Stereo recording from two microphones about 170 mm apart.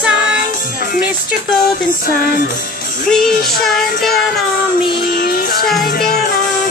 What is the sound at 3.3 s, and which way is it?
Music, 60° left (ahead or behind).